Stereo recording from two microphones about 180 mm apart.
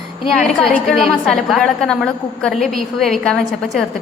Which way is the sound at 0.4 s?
5° left (ahead or behind).